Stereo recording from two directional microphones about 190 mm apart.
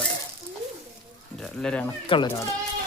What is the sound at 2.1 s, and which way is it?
Speech, 25° left (ahead or behind).